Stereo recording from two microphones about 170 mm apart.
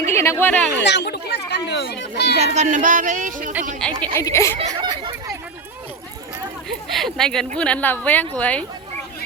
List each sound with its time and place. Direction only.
0.0 s speech: 15° left (ahead or behind)
0.9 s a sound: 80° left
2.4 s speech: 40° right (ahead or behind)
3.8 s speech: 5° left (ahead or behind)
4.2 s speech: 15° left (ahead or behind)
4.7 s a sound: 25° right (ahead or behind)
6.8 s speech: centre (ahead or behind)